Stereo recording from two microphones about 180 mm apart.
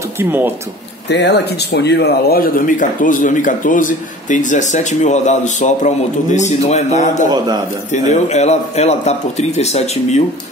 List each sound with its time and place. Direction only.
0.2 s speech: 10° right (ahead or behind)
1.0 s speech: 70° left (ahead or behind); by 10.2 s 35° left (ahead or behind)